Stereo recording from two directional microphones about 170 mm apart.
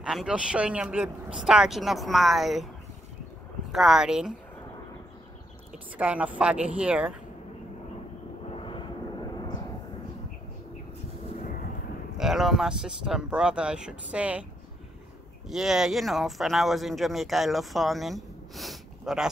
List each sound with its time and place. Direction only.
0.0 s speech: 5° right (ahead or behind)
3.7 s speech: centre (ahead or behind)
5.9 s speech: 10° right (ahead or behind)
8.5 s vehicle: 30° left (ahead or behind)
11.3 s a sound: 55° left (ahead or behind)
12.2 s speech: centre (ahead or behind)
15.4 s speech: centre (ahead or behind)